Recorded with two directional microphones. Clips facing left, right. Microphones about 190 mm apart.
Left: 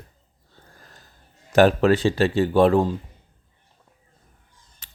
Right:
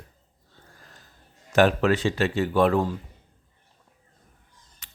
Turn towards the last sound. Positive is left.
turn(degrees=35)  # may be behind; listen again after turning